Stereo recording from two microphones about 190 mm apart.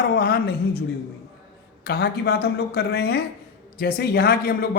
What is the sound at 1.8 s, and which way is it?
A man's voice, 60° left (ahead or behind).